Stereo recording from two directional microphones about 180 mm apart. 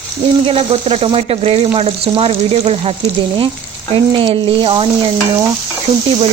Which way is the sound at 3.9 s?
30° right (ahead or behind).